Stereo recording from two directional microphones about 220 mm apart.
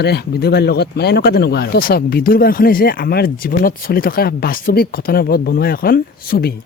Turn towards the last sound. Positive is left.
turn(degrees=45)  # may be behind; listen again after turning